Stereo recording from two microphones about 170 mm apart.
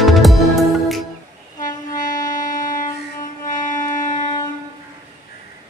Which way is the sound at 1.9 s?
50° left (ahead or behind).